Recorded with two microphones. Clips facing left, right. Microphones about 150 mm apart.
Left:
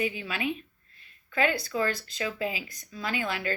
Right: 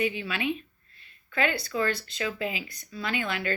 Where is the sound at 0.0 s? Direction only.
40° left (ahead or behind).